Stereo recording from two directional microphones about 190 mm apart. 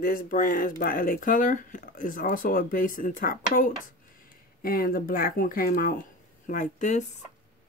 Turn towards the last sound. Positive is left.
turn(degrees=40)  # may be behind; listen again after turning